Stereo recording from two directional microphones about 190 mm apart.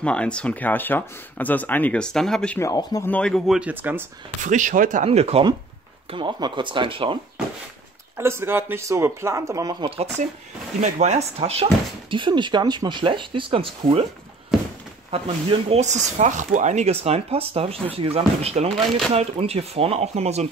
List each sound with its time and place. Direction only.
0.0 s speech: 5° left (ahead or behind)
2.6 s speech: 15° left (ahead or behind)
3.1 s speech: 5° left (ahead or behind)
4.4 s speech: 40° right (ahead or behind)
8.2 s a man's voice: 15° right (ahead or behind); by 14.0 s 30° right (ahead or behind)
14.5 s a sound: centre (ahead or behind)
15.7 s speech: 40° right (ahead or behind)